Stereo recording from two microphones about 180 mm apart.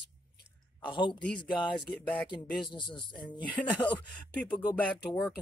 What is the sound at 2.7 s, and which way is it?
Speech, 25° left (ahead or behind).